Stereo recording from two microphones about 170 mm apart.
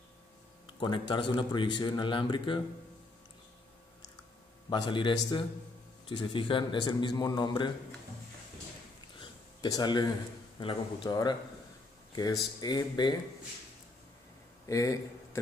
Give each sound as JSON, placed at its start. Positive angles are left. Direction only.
{"t": 0.7, "sound": "speech", "side_deg": 30}
{"t": 4.6, "sound": "speech", "side_deg": 30}
{"t": 9.2, "sound": "a sound", "side_deg": 25}
{"t": 10.6, "sound": "speech", "side_deg": 25}
{"t": 14.7, "sound": "speech", "side_deg": 20}